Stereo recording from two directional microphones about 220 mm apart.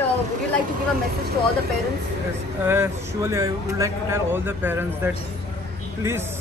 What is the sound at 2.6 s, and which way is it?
Speech, 10° right (ahead or behind).